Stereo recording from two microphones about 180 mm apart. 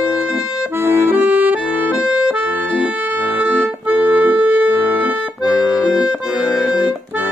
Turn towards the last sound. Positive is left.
turn(degrees=-5)  # may be behind; listen again after turning